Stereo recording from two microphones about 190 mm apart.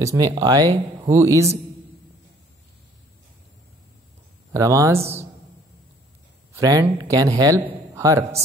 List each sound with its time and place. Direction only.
0.0 s a man's voice: 15° right (ahead or behind)
4.5 s a man's voice: 15° right (ahead or behind)
6.5 s a man's voice: 15° right (ahead or behind)